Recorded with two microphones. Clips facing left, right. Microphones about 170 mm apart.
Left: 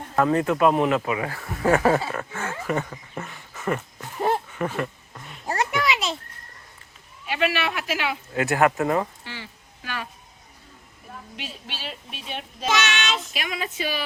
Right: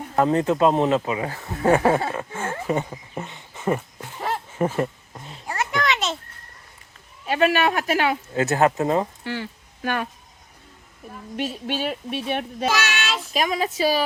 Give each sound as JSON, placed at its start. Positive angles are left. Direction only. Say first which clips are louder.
{"t": 0.2, "sound": "speech", "louder": "right 1 dB", "side_deg": -20}
{"t": 4.5, "sound": "a sound", "louder": "right 4 dB", "side_deg": -30}
{"t": 5.8, "sound": "a sound", "louder": "right 1 dB", "side_deg": 0}
{"t": 7.3, "sound": "speech", "louder": "right 5 dB", "side_deg": -45}
{"t": 8.3, "sound": "speech", "louder": "left 1 dB", "side_deg": -25}
{"t": 9.2, "sound": "speech", "louder": "right 9 dB", "side_deg": -50}
{"t": 11.3, "sound": "speech", "louder": "right 14 dB", "side_deg": -50}
{"t": 12.6, "sound": "child singing", "louder": "left 1 dB", "side_deg": -10}
{"t": 13.2, "sound": "speech", "louder": "right 8 dB", "side_deg": -40}